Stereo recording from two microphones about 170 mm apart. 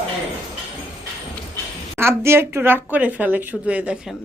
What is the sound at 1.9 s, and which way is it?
A woman's voice, 15° right (ahead or behind).